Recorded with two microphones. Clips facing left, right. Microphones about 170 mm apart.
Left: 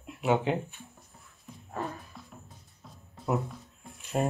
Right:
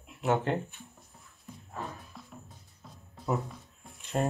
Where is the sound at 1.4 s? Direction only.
Centre (ahead or behind).